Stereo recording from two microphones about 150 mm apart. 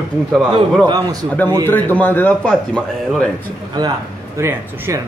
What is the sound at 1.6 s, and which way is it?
A man's voice, 15° left (ahead or behind).